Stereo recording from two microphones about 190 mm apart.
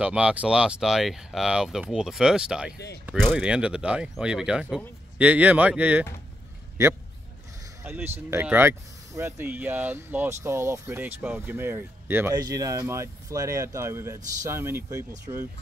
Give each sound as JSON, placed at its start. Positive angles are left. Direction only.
{"t": 0.0, "sound": "speech", "side_deg": -5}
{"t": 7.8, "sound": "speech", "side_deg": -10}